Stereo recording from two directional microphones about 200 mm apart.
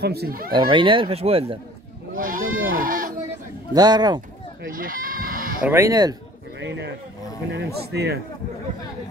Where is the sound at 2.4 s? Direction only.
80° right.